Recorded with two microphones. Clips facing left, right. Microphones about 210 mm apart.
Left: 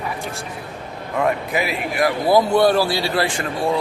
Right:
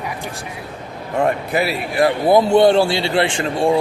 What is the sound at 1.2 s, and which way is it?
A man's voice, 35° right (ahead or behind).